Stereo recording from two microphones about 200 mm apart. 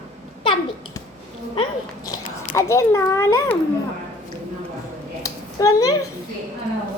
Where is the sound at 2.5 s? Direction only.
15° left (ahead or behind).